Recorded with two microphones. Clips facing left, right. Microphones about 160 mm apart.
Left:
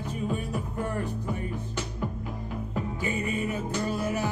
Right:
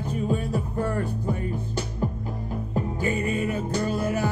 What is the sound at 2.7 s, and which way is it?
Music, 35° right (ahead or behind).